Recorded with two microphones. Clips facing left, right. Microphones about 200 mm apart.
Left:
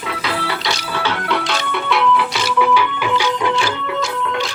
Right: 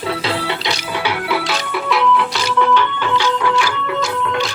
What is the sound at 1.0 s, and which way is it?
Music, 5° right (ahead or behind).